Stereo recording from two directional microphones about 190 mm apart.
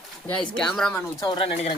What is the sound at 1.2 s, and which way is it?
Speech, 25° left (ahead or behind).